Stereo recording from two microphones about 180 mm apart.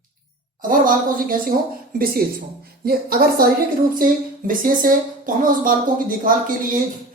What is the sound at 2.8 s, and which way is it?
A woman's voice, 55° right (ahead or behind).